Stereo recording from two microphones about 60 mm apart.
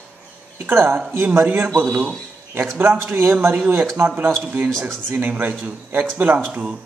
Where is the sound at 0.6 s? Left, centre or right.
Right.